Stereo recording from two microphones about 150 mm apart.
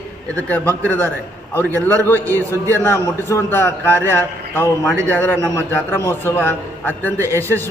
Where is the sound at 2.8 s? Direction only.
15° left (ahead or behind).